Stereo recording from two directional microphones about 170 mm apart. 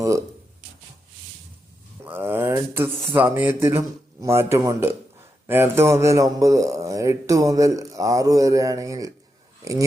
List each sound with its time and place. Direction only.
0.0 s writing: 20° right (ahead or behind)
2.0 s speech: 10° right (ahead or behind)